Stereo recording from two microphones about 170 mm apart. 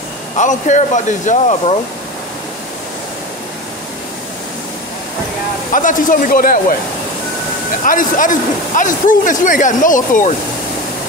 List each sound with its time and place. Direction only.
0.4 s a man's voice: 45° left (ahead or behind)
5.7 s a man's voice: 50° left (ahead or behind)
7.8 s a man's voice: 50° left (ahead or behind)